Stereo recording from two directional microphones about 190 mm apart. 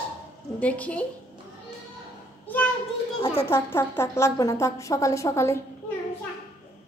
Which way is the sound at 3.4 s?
10° left (ahead or behind).